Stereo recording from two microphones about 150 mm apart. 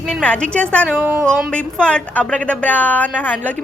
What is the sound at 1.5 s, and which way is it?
A woman's voice, 5° left (ahead or behind).